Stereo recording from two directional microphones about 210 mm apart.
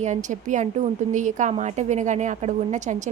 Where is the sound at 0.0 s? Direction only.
35° right (ahead or behind).